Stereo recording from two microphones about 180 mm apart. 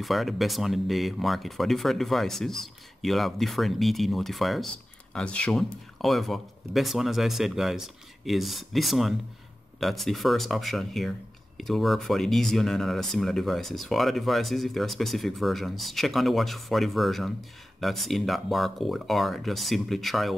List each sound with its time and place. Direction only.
0.0 s speech: centre (ahead or behind)